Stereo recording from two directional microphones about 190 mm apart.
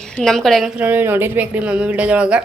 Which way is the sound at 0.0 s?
5° left (ahead or behind).